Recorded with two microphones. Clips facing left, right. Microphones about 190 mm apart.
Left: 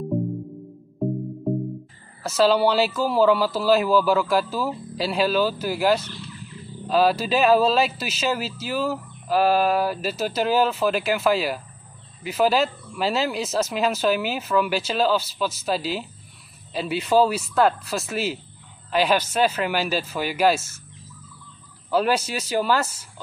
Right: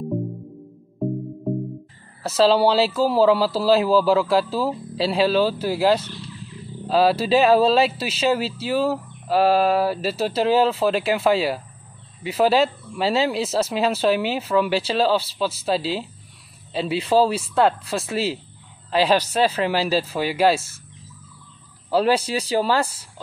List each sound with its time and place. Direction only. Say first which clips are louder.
1.0 s music: even; centre (ahead or behind)
2.2 s speech: right 2 dB; 30° right (ahead or behind)
21.9 s speech: right 3 dB; 30° right (ahead or behind)